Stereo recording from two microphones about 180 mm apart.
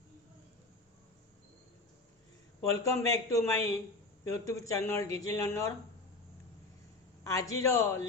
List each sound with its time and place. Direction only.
2.6 s speech: 15° left (ahead or behind)
7.3 s speech: 15° left (ahead or behind)